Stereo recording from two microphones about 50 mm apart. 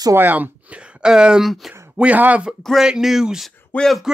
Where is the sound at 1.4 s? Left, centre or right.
Centre.